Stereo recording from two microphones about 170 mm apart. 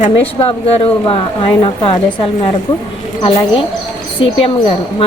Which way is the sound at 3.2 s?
30° left (ahead or behind).